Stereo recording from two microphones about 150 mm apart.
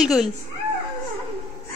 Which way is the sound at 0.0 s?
5° right (ahead or behind).